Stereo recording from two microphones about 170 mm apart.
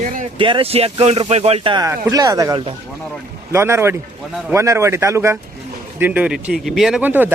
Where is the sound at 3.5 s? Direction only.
15° right (ahead or behind).